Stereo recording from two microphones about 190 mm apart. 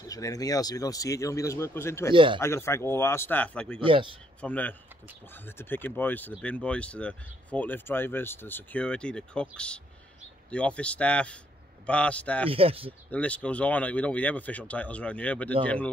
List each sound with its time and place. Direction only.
0.1 s speech: 20° left (ahead or behind)
2.1 s speech: 25° right (ahead or behind)
2.4 s speech: 15° left (ahead or behind)
3.8 s speech: 25° right (ahead or behind)
4.4 s speech: 10° left (ahead or behind)
12.4 s speech: 30° right (ahead or behind)
13.1 s speech: 5° left (ahead or behind)